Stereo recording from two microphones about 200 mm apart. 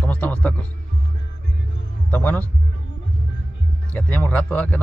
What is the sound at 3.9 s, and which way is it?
Speech, 10° left (ahead or behind).